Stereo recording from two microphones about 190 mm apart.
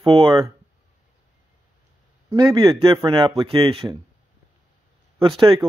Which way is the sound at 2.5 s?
25° right (ahead or behind).